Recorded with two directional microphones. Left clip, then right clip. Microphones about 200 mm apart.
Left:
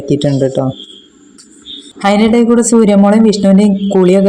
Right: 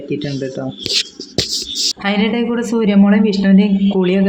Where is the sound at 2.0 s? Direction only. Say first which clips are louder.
Left 13 dB; 30° left (ahead or behind).